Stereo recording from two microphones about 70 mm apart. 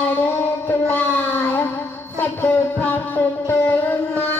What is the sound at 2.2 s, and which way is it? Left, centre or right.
Music, left.